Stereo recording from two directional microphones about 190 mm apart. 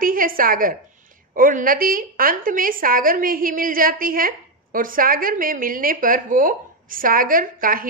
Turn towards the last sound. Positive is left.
turn(degrees=-45)  # may be behind; listen again after turning